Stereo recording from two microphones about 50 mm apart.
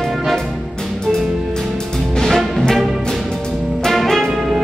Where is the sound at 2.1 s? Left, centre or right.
Centre.